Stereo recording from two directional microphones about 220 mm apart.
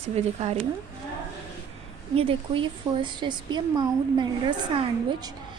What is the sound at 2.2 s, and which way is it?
A woman's voice, 25° right (ahead or behind).